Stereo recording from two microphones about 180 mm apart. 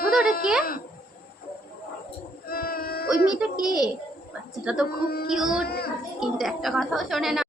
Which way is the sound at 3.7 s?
20° left (ahead or behind).